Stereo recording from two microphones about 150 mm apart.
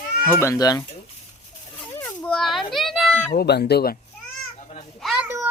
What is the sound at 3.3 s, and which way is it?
Speech, 90° left.